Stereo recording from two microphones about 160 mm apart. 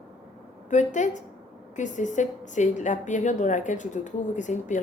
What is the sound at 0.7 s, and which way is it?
A woman's voice, 50° left (ahead or behind).